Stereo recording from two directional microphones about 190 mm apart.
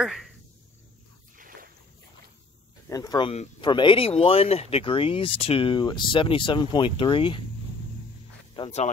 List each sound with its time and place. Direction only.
0.0 s speech: 5° right (ahead or behind)
1.4 s boat: 45° right (ahead or behind)
2.9 s speech: 20° left (ahead or behind)
8.5 s speech: 30° left (ahead or behind)